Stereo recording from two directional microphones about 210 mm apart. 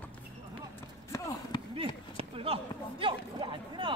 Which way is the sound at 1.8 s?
25° right (ahead or behind).